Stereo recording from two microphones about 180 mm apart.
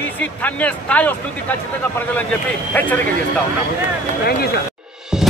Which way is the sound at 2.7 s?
10° left (ahead or behind).